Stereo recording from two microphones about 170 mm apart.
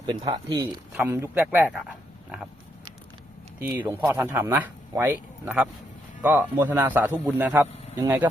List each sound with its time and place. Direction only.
0.0 s speech: 25° right (ahead or behind)
0.9 s a man's voice: 15° right (ahead or behind)
3.6 s a man's voice: 10° right (ahead or behind)